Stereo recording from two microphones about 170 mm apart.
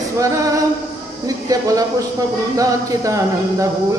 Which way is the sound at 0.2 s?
20° right (ahead or behind).